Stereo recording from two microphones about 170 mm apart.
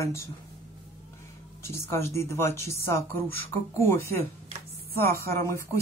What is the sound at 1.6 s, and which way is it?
Speech, 15° left (ahead or behind).